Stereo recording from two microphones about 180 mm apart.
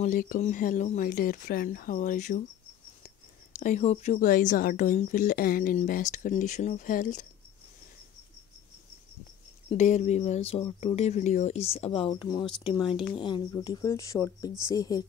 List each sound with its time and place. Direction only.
0.0 s speech: 50° left (ahead or behind)
3.5 s speech: 40° left (ahead or behind)
9.7 s speech: 40° left (ahead or behind); by 15.0 s 20° left (ahead or behind)